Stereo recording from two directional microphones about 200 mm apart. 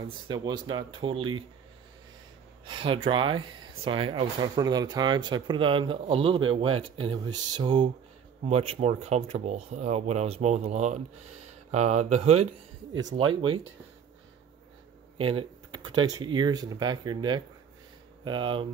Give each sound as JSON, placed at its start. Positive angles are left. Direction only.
{"t": 0.3, "sound": "speech", "side_deg": -20}
{"t": 2.6, "sound": "speech", "side_deg": -25}
{"t": 15.1, "sound": "computer keyboard", "side_deg": -25}
{"t": 16.1, "sound": "speech", "side_deg": -20}